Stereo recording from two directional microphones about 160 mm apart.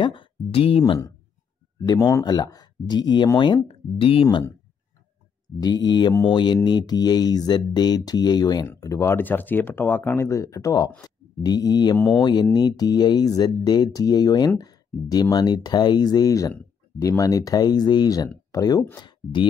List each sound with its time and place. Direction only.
0.0 s speech: 30° left (ahead or behind)
1.8 s speech: 20° left (ahead or behind)
2.2 s speech: 25° left (ahead or behind)
5.6 s speech: 25° left (ahead or behind)